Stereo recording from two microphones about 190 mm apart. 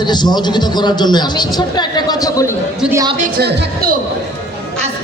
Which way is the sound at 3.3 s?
55° right (ahead or behind).